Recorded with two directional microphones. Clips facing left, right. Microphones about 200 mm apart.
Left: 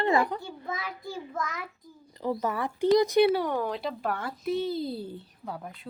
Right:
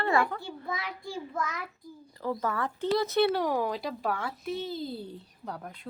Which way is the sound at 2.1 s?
20° left (ahead or behind).